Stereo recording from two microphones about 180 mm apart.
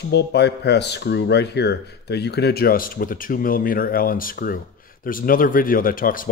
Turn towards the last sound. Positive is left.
turn(degrees=50)  # may be behind; listen again after turning